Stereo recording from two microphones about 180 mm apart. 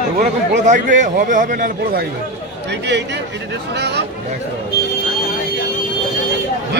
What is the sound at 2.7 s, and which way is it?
A man's voice, 70° right (ahead or behind).